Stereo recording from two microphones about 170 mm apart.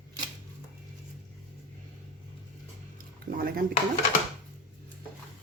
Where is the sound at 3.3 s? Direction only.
65° right (ahead or behind).